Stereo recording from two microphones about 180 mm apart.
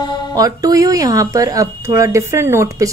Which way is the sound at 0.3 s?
20° right (ahead or behind).